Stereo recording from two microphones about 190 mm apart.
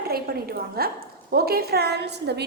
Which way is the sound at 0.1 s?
55° right (ahead or behind).